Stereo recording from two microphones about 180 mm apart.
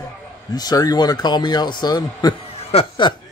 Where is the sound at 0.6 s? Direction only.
20° left (ahead or behind).